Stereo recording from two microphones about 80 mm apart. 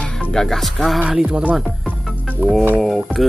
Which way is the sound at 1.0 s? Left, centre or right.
Centre.